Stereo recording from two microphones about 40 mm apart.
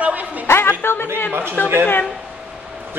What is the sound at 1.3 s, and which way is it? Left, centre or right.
Speech, right.